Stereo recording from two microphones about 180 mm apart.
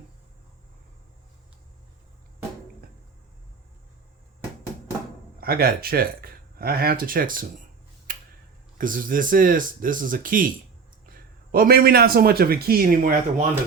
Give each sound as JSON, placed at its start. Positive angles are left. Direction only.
{"t": 5.4, "sound": "speech", "side_deg": -55}
{"t": 8.1, "sound": "tick-tock", "side_deg": -50}
{"t": 8.8, "sound": "a man's voice", "side_deg": -50}